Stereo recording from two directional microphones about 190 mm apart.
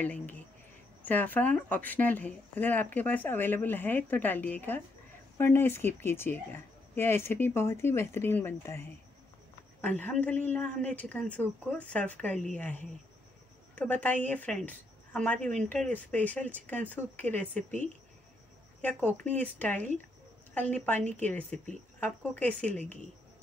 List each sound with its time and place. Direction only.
0.0 s a woman's voice: 10° left (ahead or behind)